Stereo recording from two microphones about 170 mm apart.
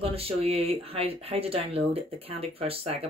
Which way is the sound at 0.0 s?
35° right (ahead or behind).